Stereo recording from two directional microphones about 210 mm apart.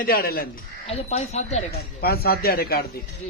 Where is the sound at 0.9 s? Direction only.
30° left (ahead or behind).